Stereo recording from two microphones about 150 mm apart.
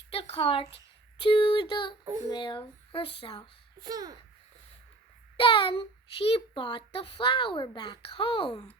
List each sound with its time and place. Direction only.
0.1 s a woman's voice: 40° left (ahead or behind)
3.8 s speech: 25° right (ahead or behind)
5.4 s speech: 35° left (ahead or behind)